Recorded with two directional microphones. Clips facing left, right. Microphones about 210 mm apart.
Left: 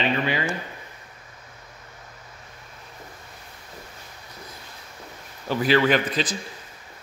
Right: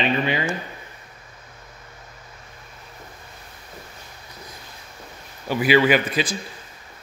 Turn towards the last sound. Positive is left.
turn(degrees=-10)  # may be behind; listen again after turning